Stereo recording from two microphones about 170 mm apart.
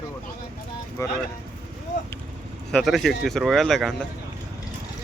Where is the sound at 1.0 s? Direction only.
15° left (ahead or behind).